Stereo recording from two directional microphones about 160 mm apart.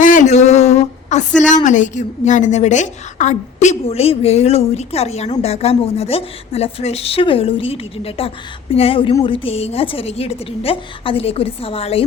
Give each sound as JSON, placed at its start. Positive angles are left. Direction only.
{"t": 0.0, "sound": "a woman's voice", "side_deg": 55}